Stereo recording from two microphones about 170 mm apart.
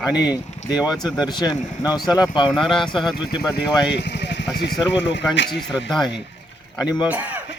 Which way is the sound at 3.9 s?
85° left.